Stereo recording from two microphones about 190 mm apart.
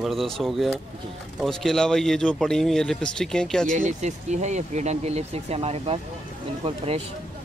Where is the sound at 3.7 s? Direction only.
40° right (ahead or behind).